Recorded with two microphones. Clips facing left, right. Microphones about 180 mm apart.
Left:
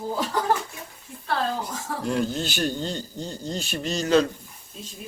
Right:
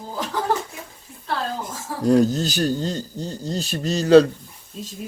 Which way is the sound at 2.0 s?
40° right (ahead or behind).